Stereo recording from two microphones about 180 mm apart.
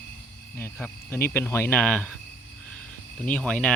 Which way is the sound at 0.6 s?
10° left (ahead or behind).